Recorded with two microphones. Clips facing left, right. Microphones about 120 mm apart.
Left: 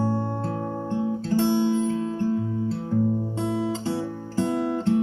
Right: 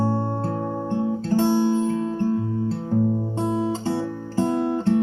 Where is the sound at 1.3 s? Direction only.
40° right (ahead or behind).